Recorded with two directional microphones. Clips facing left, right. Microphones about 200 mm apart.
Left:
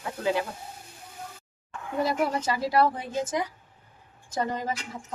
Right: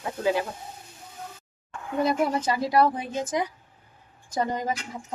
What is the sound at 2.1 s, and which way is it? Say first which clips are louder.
A woman's voice: right 3 dB; 20° right (ahead or behind).